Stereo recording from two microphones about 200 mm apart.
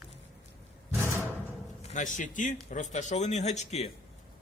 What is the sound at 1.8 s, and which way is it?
A man's voice, 40° left (ahead or behind).